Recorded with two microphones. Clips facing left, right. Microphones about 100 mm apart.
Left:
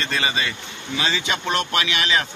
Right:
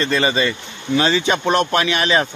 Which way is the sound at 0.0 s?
40° right (ahead or behind).